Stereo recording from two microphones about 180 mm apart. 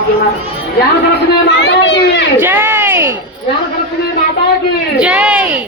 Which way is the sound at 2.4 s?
10° right (ahead or behind).